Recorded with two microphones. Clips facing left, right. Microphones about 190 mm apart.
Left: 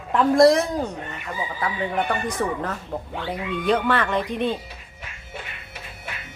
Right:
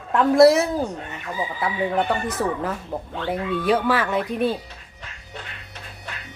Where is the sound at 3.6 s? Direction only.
5° right (ahead or behind).